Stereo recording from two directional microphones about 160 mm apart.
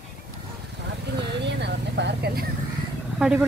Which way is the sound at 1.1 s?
90° right.